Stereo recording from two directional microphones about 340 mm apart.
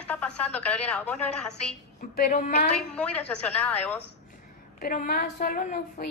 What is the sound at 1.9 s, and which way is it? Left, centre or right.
Speech, left.